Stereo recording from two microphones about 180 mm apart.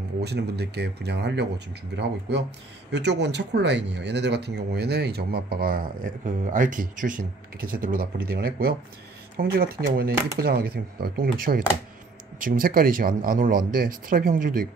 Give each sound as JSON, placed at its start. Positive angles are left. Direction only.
{"t": 0.2, "sound": "speech", "side_deg": -65}